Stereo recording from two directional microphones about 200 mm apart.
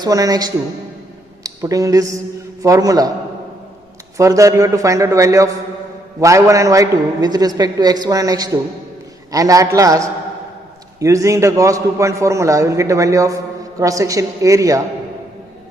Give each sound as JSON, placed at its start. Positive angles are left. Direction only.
{"t": 0.0, "sound": "a man's voice", "side_deg": -20}
{"t": 4.2, "sound": "a man's voice", "side_deg": -15}